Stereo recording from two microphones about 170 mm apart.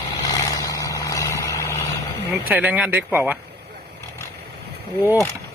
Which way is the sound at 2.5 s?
10° right (ahead or behind).